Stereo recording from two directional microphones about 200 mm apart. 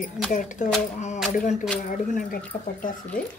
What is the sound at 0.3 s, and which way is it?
Speech, 40° left (ahead or behind).